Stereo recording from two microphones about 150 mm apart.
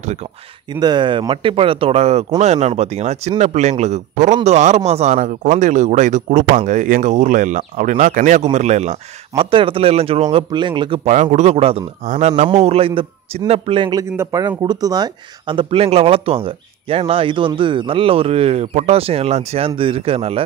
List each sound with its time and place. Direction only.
0.7 s speech: 30° right (ahead or behind); by 9.0 s 50° right (ahead or behind)
9.4 s speech: 35° right (ahead or behind)
11.1 s speech: 55° right (ahead or behind)
12.1 s speech: 50° right (ahead or behind); by 14.0 s 30° right (ahead or behind)
14.1 s speech: 15° right (ahead or behind); by 20.4 s 40° right (ahead or behind)